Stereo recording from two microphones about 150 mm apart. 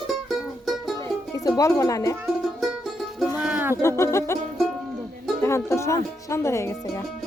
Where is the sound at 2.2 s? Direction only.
Centre (ahead or behind).